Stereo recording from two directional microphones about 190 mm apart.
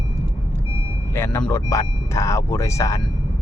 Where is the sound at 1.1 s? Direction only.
10° left (ahead or behind).